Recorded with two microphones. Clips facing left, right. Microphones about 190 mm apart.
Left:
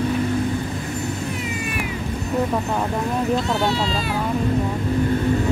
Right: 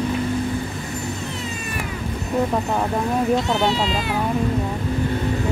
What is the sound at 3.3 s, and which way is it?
Speech, 20° right (ahead or behind).